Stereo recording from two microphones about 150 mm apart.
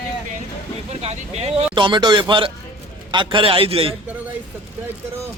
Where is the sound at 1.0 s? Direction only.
45° right (ahead or behind).